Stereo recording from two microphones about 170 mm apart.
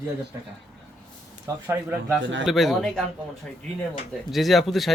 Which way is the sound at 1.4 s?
15° right (ahead or behind).